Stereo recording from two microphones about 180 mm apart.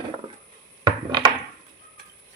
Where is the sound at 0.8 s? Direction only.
25° right (ahead or behind).